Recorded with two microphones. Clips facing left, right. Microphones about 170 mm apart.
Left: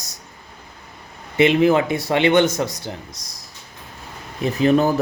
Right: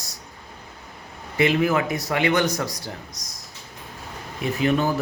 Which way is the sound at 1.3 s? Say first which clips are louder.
Left 5 dB; 25° left (ahead or behind).